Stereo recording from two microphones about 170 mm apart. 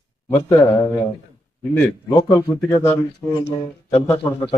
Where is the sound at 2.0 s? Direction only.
25° left (ahead or behind).